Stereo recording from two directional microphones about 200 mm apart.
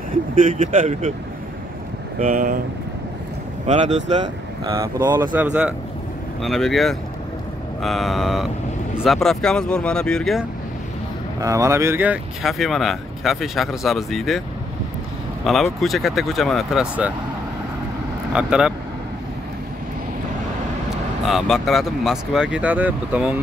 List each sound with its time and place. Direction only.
0.4 s speech: 40° right (ahead or behind)
2.1 s speech: 40° right (ahead or behind)
3.6 s speech: 35° right (ahead or behind)
4.7 s speech: 15° right (ahead or behind); by 10.4 s centre (ahead or behind)
11.3 s speech: 15° right (ahead or behind); by 14.4 s centre (ahead or behind)
15.4 s speech: centre (ahead or behind)
18.3 s speech: 5° right (ahead or behind)
21.3 s speech: centre (ahead or behind)